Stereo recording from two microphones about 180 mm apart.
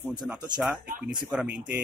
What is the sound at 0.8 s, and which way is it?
Speech, 55° right (ahead or behind).